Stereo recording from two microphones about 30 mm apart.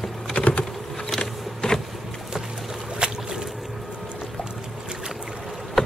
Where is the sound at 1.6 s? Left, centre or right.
Left.